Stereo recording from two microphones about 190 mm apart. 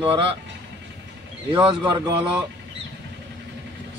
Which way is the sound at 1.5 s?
25° right (ahead or behind).